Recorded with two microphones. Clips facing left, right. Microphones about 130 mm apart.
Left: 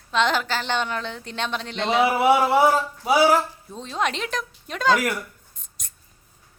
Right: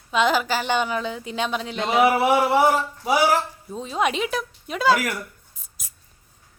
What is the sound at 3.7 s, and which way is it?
A woman's voice, 5° right (ahead or behind).